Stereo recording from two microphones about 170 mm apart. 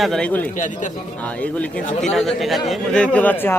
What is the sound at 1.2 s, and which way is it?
Speech, 10° left (ahead or behind).